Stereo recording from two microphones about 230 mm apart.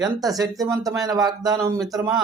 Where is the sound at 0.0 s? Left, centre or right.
Centre.